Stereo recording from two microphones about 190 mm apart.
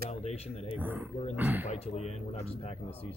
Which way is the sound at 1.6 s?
35° left (ahead or behind).